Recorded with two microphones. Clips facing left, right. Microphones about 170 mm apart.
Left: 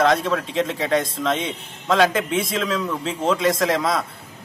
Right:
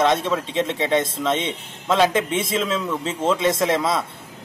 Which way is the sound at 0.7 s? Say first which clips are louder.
Right 1 dB; 25° right (ahead or behind).